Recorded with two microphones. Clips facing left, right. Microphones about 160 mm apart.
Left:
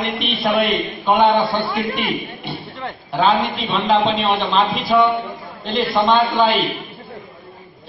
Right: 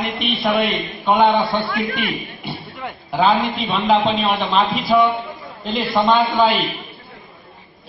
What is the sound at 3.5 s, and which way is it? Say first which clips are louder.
A man's voice: even; centre (ahead or behind).